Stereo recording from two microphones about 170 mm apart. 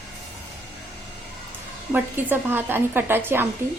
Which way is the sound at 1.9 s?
10° right (ahead or behind).